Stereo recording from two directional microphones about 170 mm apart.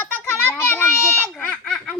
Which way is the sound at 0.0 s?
15° left (ahead or behind).